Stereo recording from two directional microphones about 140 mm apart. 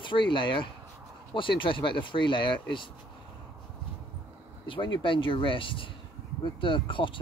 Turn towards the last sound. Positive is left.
turn(degrees=35)  # may be behind; listen again after turning